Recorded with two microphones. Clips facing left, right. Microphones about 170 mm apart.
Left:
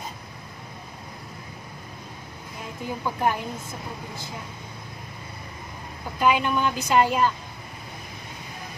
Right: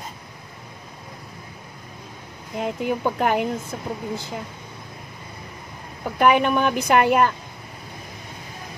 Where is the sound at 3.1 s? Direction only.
75° right (ahead or behind).